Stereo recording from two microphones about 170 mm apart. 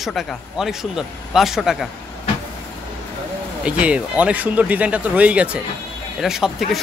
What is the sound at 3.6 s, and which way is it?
Speech, 5° right (ahead or behind).